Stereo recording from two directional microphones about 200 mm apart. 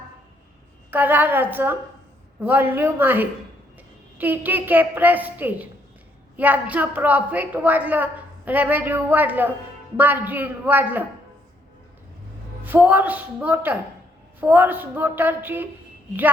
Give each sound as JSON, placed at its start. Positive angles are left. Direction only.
{"t": 0.9, "sound": "a woman's voice", "side_deg": -10}
{"t": 12.6, "sound": "a woman's voice", "side_deg": -10}